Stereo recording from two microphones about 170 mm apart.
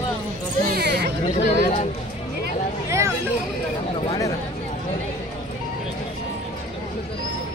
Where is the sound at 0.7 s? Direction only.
70° right (ahead or behind).